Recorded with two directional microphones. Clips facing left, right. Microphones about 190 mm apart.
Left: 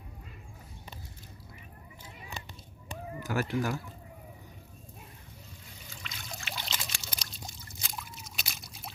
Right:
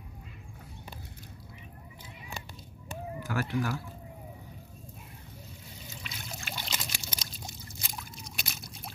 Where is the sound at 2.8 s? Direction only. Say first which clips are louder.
Even; 20° left (ahead or behind).